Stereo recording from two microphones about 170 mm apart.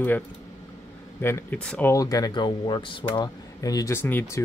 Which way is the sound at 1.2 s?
10° left (ahead or behind).